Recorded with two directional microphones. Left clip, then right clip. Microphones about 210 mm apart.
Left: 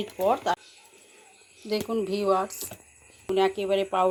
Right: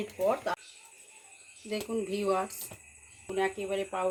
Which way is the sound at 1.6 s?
35° left (ahead or behind).